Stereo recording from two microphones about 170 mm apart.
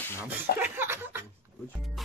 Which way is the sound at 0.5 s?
10° right (ahead or behind).